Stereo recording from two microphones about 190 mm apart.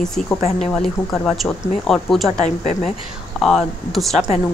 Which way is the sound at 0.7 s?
Centre (ahead or behind).